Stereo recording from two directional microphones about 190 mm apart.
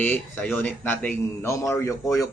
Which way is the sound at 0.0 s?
10° left (ahead or behind).